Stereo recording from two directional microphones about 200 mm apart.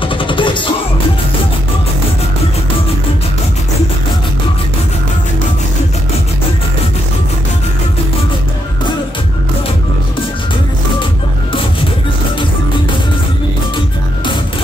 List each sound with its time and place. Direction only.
0.0 s music: 25° left (ahead or behind)